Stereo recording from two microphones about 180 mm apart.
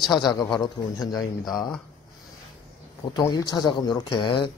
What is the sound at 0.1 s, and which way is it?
Speech, 25° left (ahead or behind).